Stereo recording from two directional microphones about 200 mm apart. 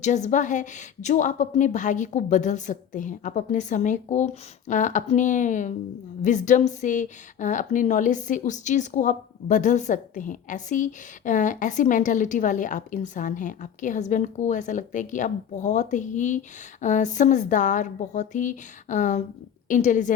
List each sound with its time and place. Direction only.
0.0 s a woman's voice: 35° left (ahead or behind)